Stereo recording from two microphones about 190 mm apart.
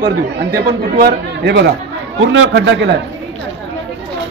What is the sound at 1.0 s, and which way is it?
A man's voice, 60° right (ahead or behind).